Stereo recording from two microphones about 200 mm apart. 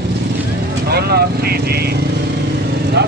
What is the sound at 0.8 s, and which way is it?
Vehicle, 55° right (ahead or behind).